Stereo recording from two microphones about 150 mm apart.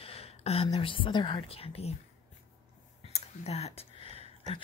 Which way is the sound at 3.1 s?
45° left (ahead or behind).